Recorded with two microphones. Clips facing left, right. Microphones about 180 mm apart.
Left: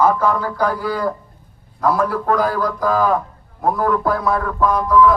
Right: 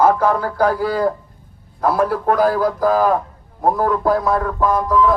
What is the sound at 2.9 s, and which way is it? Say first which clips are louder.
A man's voice: right 1 dB; 40° right (ahead or behind).